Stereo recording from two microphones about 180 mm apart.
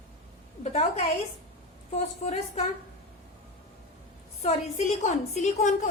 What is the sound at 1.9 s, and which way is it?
Speech, 40° left (ahead or behind).